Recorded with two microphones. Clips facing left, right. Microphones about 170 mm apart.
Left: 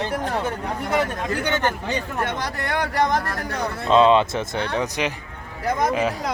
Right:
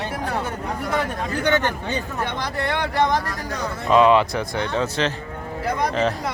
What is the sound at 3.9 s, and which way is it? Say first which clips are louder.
Speech: even; 25° left (ahead or behind).